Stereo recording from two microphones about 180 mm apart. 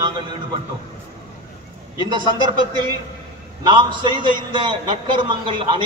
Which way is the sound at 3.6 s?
25° right (ahead or behind).